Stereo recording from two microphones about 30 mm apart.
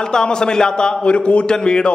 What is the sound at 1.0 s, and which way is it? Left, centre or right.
Speech, left.